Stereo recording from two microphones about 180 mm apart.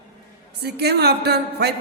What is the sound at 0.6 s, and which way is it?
A woman's voice, 65° right (ahead or behind).